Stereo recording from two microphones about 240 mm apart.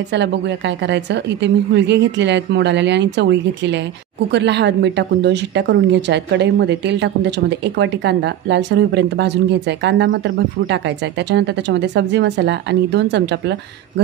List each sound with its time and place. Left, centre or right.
0.1 s a woman's voice: right